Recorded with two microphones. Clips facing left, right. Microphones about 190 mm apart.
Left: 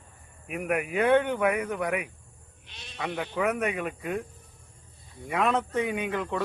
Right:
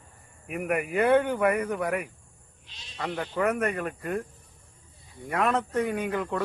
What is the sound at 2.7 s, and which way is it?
Speech, 60° left (ahead or behind).